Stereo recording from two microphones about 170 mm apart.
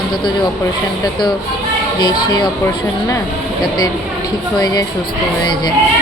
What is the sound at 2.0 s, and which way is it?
Speech, 25° left (ahead or behind).